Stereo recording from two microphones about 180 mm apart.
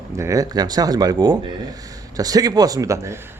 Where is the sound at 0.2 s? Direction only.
20° right (ahead or behind).